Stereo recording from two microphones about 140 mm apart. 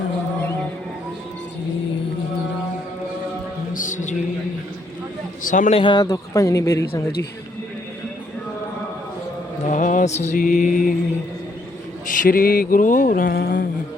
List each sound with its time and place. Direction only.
3.8 s music: 65° left (ahead or behind)
5.4 s a man's voice: 65° left (ahead or behind)
5.7 s a man's voice: 35° left (ahead or behind)
9.6 s mantra: 65° left (ahead or behind)
10.3 s mantra: 70° left (ahead or behind)
12.2 s a sound: 90° left